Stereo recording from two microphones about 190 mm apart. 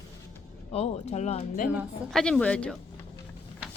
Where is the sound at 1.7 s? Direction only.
Centre (ahead or behind).